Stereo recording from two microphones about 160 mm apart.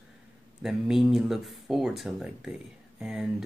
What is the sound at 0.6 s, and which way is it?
Speech, centre (ahead or behind).